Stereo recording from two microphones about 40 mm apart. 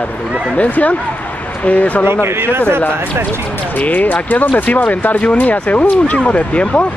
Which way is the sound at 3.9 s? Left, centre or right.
Left.